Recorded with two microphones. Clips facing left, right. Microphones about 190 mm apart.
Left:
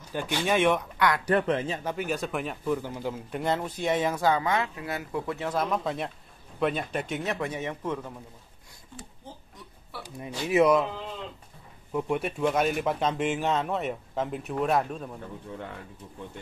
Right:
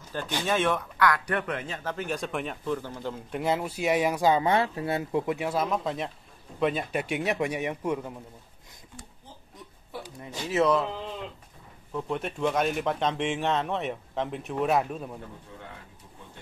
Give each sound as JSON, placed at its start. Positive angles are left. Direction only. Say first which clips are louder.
{"t": 0.1, "sound": "speech", "louder": "left 2 dB", "side_deg": 15}
{"t": 1.8, "sound": "speech", "louder": "left 2 dB", "side_deg": 10}
{"t": 3.3, "sound": "a man's voice", "louder": "right 2 dB", "side_deg": -5}
{"t": 4.5, "sound": "speech", "louder": "right 4 dB", "side_deg": -30}
{"t": 5.6, "sound": "a man's voice", "louder": "even", "side_deg": 0}
{"t": 10.2, "sound": "speech", "louder": "left 3 dB", "side_deg": 15}
{"t": 11.9, "sound": "speech", "louder": "left 3 dB", "side_deg": 10}